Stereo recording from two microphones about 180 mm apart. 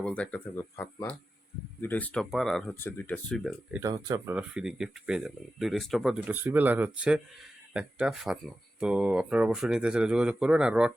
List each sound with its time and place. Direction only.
0.0 s speech: 5° left (ahead or behind)
3.8 s speech: 20° right (ahead or behind)
4.4 s speech: 5° right (ahead or behind)